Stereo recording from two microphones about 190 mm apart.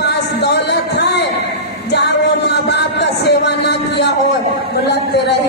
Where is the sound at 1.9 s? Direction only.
65° left (ahead or behind).